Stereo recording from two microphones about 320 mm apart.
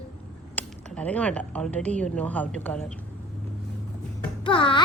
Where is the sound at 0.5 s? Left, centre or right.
Centre.